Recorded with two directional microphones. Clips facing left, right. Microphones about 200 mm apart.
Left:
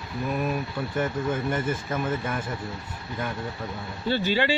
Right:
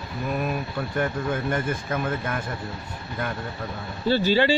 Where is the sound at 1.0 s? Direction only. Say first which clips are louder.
Even; 5° left (ahead or behind).